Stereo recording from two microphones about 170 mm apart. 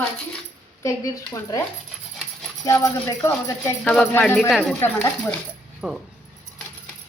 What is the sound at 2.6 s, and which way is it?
Speech, 20° left (ahead or behind).